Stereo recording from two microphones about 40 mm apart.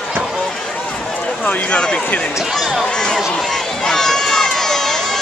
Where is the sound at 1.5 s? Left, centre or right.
Left.